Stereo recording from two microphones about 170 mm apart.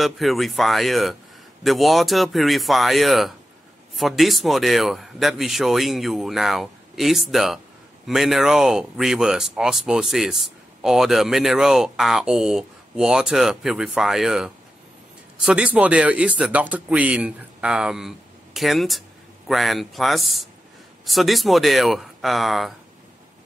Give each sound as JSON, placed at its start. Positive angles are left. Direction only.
{"t": 0.0, "sound": "speech", "side_deg": 0}